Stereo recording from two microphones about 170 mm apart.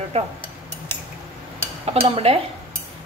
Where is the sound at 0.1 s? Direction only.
35° right (ahead or behind).